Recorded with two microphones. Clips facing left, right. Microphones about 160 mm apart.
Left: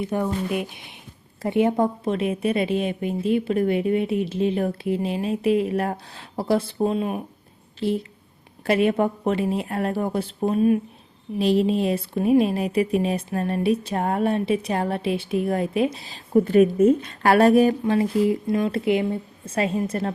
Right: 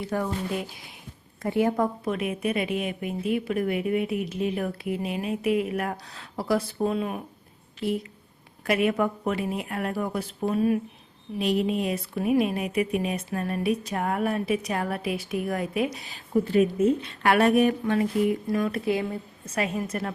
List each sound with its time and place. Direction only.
0.0 s a woman's voice: 20° left (ahead or behind)
16.3 s a woman's voice: 50° left (ahead or behind); by 20.1 s 30° left (ahead or behind)